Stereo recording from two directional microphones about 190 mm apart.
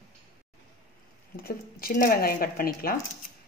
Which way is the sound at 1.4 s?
50° left (ahead or behind).